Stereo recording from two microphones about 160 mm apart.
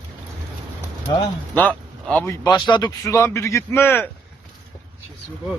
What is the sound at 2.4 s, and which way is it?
A man's voice, 25° left (ahead or behind).